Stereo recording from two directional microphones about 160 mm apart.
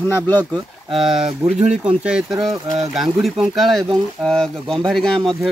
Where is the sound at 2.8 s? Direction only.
Centre (ahead or behind).